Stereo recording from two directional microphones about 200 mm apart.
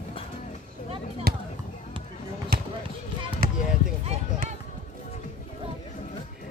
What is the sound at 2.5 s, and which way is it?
Basketball bounce, 50° right (ahead or behind).